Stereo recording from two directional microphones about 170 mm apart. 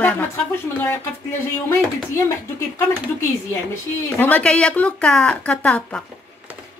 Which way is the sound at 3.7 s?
10° left (ahead or behind).